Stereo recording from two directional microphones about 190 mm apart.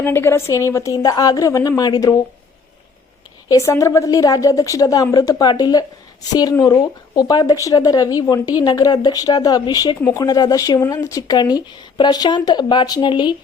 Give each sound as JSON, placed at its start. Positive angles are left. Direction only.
{"t": 0.0, "sound": "a woman's voice", "side_deg": 10}
{"t": 3.5, "sound": "a woman's voice", "side_deg": 15}